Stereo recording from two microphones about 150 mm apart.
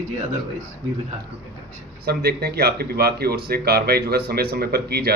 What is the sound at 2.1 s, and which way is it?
Speech, 90° right.